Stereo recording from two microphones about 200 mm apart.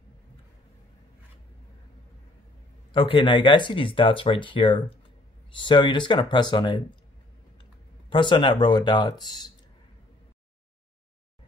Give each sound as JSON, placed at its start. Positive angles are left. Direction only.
{"t": 2.9, "sound": "speech", "side_deg": 25}
{"t": 8.1, "sound": "speech", "side_deg": 25}